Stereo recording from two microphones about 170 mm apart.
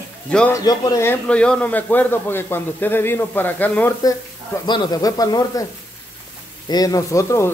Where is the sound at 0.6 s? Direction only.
20° left (ahead or behind).